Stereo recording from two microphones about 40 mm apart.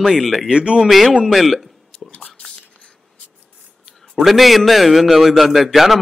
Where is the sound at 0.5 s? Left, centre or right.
Right.